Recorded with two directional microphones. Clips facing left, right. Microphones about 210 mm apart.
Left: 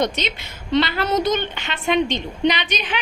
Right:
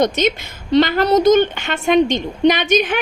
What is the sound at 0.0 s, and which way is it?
A woman's voice, 45° right (ahead or behind).